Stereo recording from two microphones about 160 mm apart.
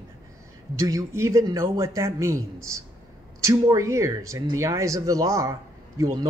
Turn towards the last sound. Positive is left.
turn(degrees=-20)  # may be behind; listen again after turning